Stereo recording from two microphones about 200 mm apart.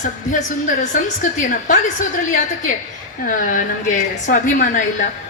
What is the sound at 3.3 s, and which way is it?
A woman's voice, 40° left (ahead or behind).